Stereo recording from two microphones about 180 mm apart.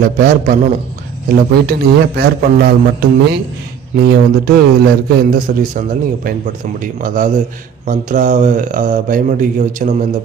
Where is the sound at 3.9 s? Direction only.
55° right (ahead or behind).